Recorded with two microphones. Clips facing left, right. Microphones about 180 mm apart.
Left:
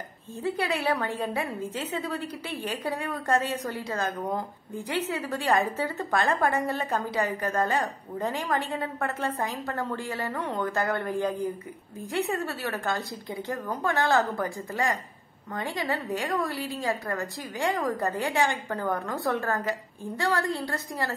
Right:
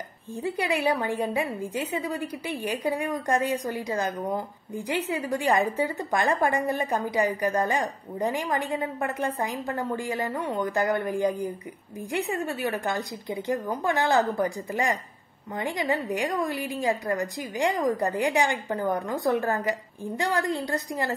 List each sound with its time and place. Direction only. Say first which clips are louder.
0.4 s a woman's voice: right 2 dB; 15° right (ahead or behind)